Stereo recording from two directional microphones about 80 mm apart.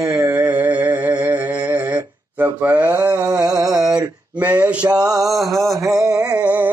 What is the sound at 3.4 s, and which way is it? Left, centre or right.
Mantra, right.